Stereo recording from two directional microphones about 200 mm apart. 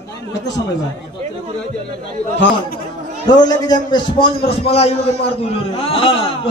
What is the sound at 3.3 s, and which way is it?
A man's voice, 20° left (ahead or behind).